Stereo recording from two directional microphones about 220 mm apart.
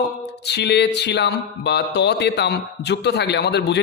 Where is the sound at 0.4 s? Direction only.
50° left (ahead or behind).